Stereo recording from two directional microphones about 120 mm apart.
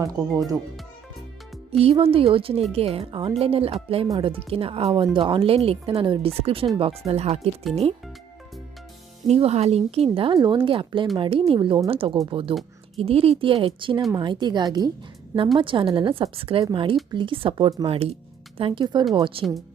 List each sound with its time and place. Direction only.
0.0 s speech: 30° right (ahead or behind)
1.8 s speech: 55° right (ahead or behind)
9.2 s speech: 60° right (ahead or behind); by 19.5 s 45° right (ahead or behind)